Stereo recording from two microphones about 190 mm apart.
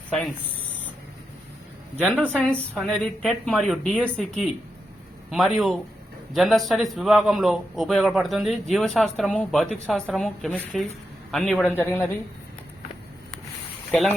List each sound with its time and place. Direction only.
2.0 s speech: 5° left (ahead or behind)
5.3 s a man's voice: centre (ahead or behind)